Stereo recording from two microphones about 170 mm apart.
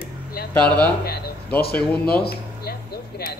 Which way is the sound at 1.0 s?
65° left (ahead or behind).